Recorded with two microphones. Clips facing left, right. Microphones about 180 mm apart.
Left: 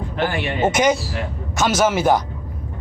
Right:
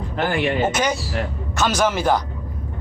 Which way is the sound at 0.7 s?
10° left (ahead or behind).